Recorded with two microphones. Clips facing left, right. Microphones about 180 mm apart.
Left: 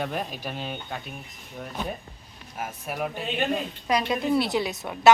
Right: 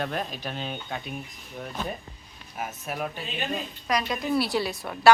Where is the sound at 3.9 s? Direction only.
25° left (ahead or behind).